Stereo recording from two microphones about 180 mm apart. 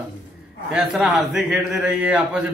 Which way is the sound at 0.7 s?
Centre (ahead or behind).